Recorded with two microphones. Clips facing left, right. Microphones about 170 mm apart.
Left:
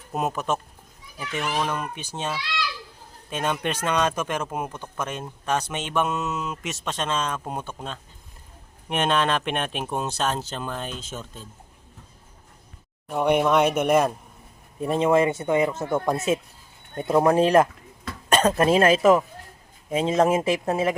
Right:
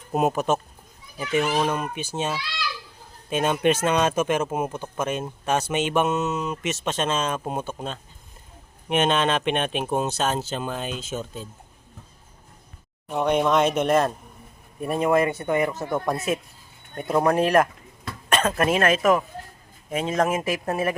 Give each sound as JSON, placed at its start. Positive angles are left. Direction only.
{"t": 0.1, "sound": "speech", "side_deg": -10}
{"t": 13.1, "sound": "speech", "side_deg": 10}
{"t": 14.8, "sound": "speech", "side_deg": 20}
{"t": 17.1, "sound": "speech", "side_deg": 10}
{"t": 17.3, "sound": "speech", "side_deg": 25}
{"t": 18.3, "sound": "speech", "side_deg": 35}